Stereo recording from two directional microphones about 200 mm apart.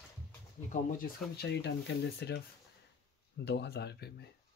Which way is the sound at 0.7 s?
50° left (ahead or behind).